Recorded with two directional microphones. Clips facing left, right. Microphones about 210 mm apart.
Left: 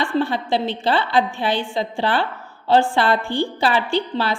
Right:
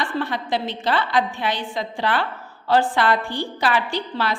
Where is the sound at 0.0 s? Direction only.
30° left (ahead or behind).